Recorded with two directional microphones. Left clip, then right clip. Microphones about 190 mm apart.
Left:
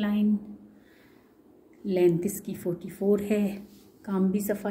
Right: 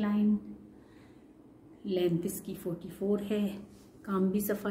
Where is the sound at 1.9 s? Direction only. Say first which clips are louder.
Left 7 dB; 30° left (ahead or behind).